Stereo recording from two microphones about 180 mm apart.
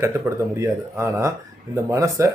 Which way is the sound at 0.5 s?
15° right (ahead or behind).